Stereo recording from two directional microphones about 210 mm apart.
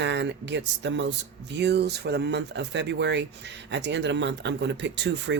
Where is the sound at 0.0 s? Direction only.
55° right (ahead or behind).